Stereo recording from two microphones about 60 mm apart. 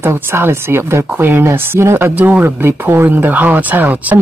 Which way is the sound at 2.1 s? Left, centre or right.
Right.